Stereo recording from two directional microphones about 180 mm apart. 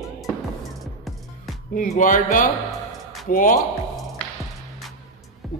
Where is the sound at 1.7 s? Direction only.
50° left (ahead or behind).